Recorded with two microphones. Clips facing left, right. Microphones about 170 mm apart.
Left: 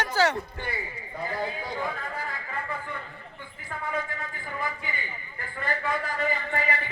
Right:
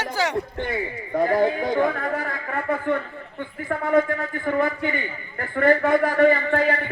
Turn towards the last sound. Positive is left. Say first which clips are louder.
# right 9 dB
turn(degrees=-60)  # may be behind; listen again after turning